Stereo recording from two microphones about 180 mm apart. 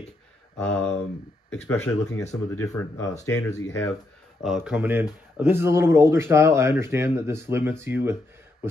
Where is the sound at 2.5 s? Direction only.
15° left (ahead or behind).